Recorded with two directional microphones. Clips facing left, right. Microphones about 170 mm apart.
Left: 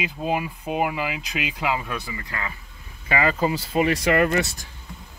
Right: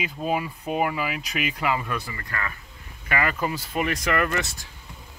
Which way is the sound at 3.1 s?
25° left (ahead or behind).